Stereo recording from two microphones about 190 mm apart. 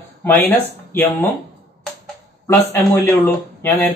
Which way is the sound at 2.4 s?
10° left (ahead or behind).